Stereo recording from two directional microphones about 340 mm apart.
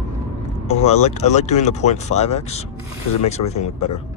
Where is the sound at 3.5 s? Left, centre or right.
Centre.